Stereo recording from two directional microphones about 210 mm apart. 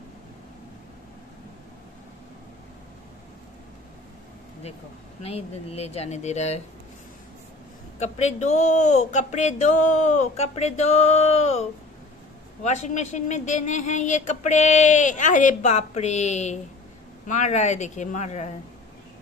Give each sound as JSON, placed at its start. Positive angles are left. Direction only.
{"t": 5.2, "sound": "a woman's voice", "side_deg": 30}
{"t": 8.0, "sound": "a woman's voice", "side_deg": 30}
{"t": 12.6, "sound": "a woman's voice", "side_deg": 35}